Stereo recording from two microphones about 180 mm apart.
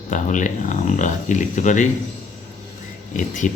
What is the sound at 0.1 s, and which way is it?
Speech, 45° left (ahead or behind).